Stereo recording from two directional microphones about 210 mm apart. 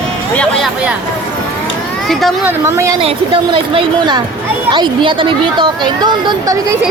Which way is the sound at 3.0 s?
25° right (ahead or behind).